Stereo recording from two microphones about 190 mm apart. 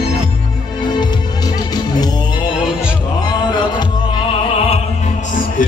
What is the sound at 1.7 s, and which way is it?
Music, 20° left (ahead or behind).